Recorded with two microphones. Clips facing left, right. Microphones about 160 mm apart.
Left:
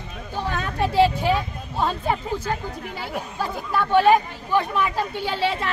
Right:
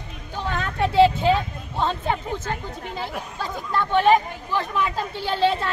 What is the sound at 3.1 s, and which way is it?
Speech, 5° left (ahead or behind).